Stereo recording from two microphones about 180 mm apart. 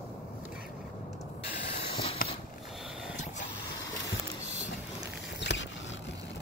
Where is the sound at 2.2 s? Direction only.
50° left (ahead or behind).